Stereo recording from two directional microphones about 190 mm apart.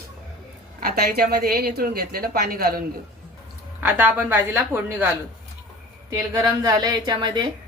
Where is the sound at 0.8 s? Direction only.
55° right (ahead or behind).